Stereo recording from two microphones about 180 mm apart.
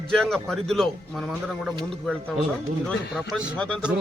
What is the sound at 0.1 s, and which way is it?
Speech, 5° left (ahead or behind).